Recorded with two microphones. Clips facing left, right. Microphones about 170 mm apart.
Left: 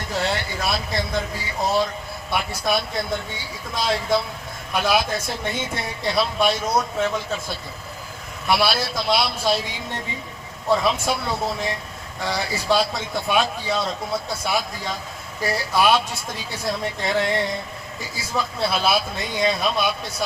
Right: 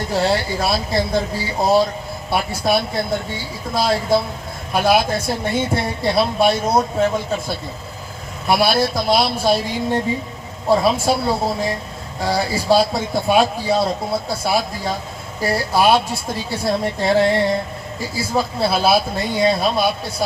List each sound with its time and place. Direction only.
0.1 s a man's voice: 35° right (ahead or behind)
4.8 s a man's voice: 50° right (ahead or behind)
5.1 s a man's voice: 30° right (ahead or behind)
8.4 s a man's voice: 45° right (ahead or behind)
9.0 s a man's voice: 35° right (ahead or behind)
10.7 s a man's voice: 35° right (ahead or behind)